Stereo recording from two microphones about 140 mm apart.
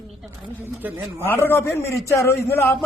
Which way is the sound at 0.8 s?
15° right (ahead or behind).